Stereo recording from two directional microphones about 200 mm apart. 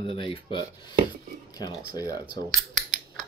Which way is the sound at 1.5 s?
20° left (ahead or behind).